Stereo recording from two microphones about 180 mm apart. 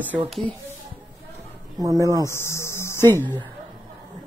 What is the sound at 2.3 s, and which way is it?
Speech, 15° left (ahead or behind).